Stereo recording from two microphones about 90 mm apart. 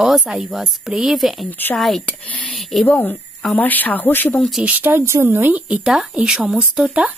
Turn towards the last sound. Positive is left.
turn(degrees=-5)  # may be behind; listen again after turning